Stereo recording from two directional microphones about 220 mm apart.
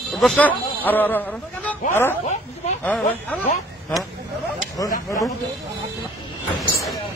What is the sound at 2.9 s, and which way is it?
Speech, 5° left (ahead or behind).